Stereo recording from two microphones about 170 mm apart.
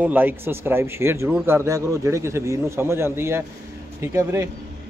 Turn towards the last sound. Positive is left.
turn(degrees=-15)  # may be behind; listen again after turning